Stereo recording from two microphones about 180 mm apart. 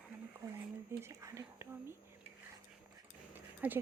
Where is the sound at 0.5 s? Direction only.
15° right (ahead or behind).